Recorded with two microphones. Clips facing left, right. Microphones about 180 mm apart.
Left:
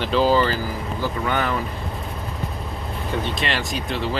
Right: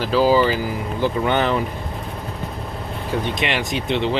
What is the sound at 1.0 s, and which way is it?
Speech, 25° right (ahead or behind).